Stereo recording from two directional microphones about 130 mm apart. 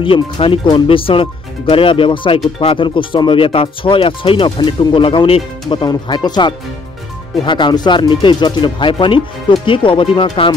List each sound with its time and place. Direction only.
0.0 s speech: 40° left (ahead or behind)